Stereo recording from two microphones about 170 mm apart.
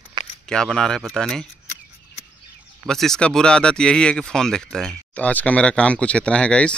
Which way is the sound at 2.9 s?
5° left (ahead or behind).